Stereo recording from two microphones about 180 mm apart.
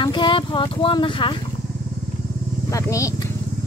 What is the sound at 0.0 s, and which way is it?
Speech, 25° left (ahead or behind).